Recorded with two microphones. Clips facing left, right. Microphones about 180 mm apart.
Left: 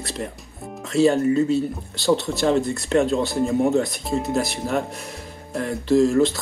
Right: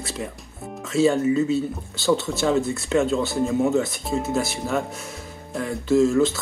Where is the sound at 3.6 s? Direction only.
15° left (ahead or behind).